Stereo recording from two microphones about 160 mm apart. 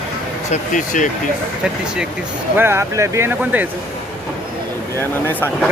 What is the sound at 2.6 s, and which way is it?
Speech, 15° right (ahead or behind).